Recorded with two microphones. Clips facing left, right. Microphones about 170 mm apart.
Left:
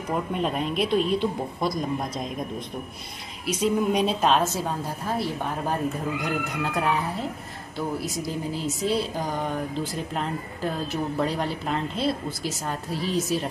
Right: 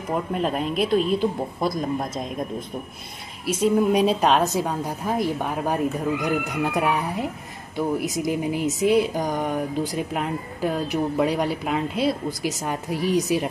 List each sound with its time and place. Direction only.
0.1 s a woman's voice: centre (ahead or behind)
3.9 s a woman's voice: centre (ahead or behind)
4.3 s speech: 15° right (ahead or behind)